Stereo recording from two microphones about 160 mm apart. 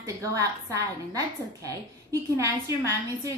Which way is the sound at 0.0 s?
20° right (ahead or behind).